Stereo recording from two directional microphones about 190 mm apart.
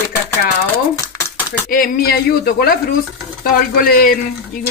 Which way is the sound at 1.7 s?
50° left (ahead or behind).